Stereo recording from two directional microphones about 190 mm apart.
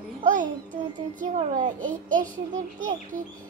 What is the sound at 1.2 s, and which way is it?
A child's voice, 45° right (ahead or behind).